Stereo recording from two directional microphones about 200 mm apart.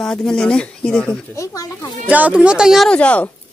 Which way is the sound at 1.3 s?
15° left (ahead or behind).